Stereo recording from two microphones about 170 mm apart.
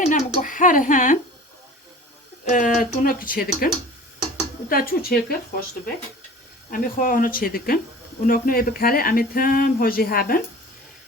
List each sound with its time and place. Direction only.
0.0 s speech: 50° left (ahead or behind)
2.4 s speech: 50° left (ahead or behind)
4.7 s speech: 60° left (ahead or behind)
6.7 s speech: 55° left (ahead or behind)